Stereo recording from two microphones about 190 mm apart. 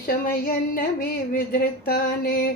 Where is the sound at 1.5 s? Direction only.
55° left (ahead or behind).